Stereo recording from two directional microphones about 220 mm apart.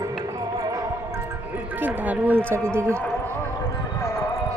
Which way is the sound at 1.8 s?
5° right (ahead or behind).